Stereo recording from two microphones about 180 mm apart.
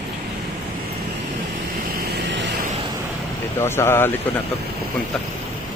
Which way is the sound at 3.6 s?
15° left (ahead or behind).